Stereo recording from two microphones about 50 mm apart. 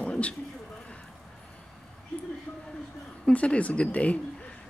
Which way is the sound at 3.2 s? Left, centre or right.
Left.